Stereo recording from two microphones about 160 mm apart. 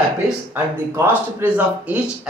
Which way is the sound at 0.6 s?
15° right (ahead or behind).